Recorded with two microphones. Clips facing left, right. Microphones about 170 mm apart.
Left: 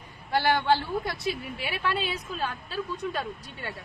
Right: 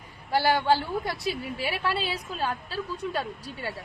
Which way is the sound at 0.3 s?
35° right (ahead or behind).